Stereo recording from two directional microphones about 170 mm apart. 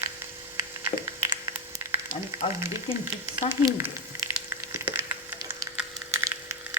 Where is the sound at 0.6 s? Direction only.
15° right (ahead or behind).